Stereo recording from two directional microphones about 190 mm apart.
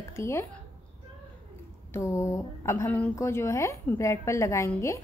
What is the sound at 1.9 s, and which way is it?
A woman's voice, 15° left (ahead or behind).